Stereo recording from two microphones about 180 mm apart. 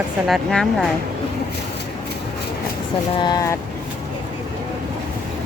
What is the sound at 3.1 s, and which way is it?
Speech, 25° left (ahead or behind).